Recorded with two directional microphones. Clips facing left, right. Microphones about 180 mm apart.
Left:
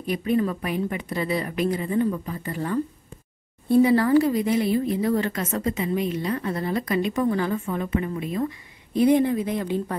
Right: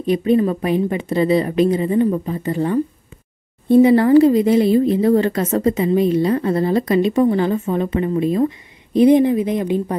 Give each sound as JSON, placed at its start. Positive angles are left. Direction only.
{"t": 0.0, "sound": "a woman's voice", "side_deg": -25}